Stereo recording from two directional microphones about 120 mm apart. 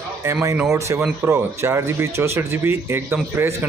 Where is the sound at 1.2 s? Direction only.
20° right (ahead or behind).